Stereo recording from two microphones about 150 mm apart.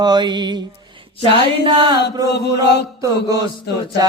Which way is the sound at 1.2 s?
35° right (ahead or behind).